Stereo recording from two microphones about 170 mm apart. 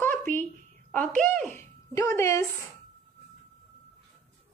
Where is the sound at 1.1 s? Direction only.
50° right (ahead or behind).